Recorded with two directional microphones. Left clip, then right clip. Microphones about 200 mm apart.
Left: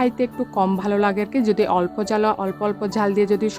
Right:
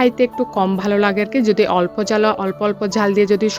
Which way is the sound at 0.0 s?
5° right (ahead or behind).